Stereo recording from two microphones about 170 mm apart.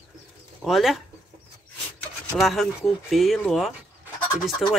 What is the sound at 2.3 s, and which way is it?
Speech, centre (ahead or behind).